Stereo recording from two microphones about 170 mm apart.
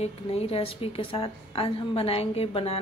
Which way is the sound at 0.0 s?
35° left (ahead or behind).